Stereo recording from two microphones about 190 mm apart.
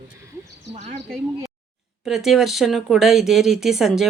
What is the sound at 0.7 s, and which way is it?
Speech, 35° right (ahead or behind).